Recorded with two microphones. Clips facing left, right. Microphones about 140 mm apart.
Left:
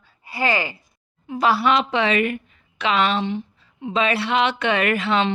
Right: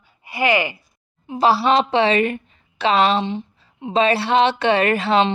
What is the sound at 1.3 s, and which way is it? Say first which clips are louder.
A woman's voice: right 3 dB; 30° right (ahead or behind).